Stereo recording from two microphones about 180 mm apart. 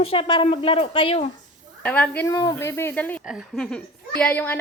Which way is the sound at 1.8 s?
5° left (ahead or behind).